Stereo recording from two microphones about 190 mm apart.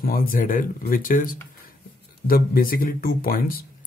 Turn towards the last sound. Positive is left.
turn(degrees=50)  # may be behind; listen again after turning